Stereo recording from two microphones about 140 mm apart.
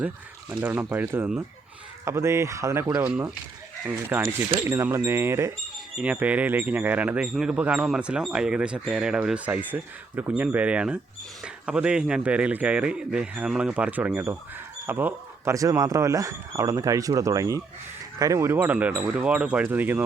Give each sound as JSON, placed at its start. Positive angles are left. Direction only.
{"t": 0.5, "sound": "speech", "side_deg": -10}
{"t": 3.0, "sound": "speech", "side_deg": -10}